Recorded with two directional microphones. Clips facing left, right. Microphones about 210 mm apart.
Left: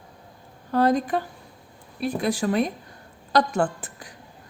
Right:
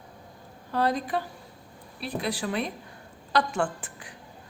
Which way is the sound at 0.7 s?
45° left (ahead or behind).